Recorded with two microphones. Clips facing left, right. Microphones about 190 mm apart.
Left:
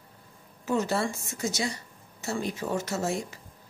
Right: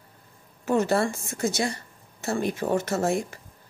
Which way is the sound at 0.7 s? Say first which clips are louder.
Right 4 dB; 55° right (ahead or behind).